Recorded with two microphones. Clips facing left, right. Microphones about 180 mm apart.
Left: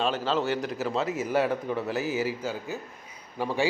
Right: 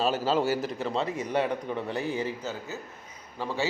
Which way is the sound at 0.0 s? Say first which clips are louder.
Right 1 dB; 10° right (ahead or behind).